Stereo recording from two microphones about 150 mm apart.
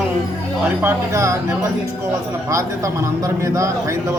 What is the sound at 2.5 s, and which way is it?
Speech, 20° right (ahead or behind).